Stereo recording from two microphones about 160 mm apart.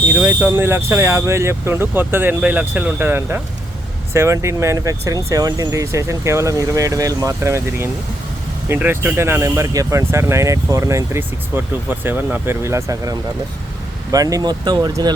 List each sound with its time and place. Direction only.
0.1 s speech: 10° right (ahead or behind); by 15.1 s 25° right (ahead or behind)